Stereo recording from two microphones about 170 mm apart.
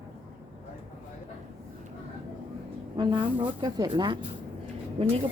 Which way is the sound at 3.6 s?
25° right (ahead or behind).